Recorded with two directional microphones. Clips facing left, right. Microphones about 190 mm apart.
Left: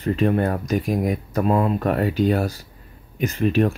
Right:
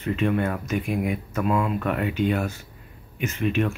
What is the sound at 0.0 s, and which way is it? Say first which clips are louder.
Speech: left 4 dB; 35° left (ahead or behind).